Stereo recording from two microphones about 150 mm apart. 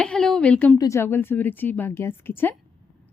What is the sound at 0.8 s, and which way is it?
A woman's voice, 20° left (ahead or behind).